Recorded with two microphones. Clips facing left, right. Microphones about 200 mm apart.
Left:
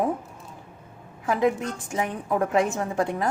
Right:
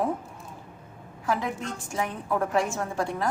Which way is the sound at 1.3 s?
20° left (ahead or behind).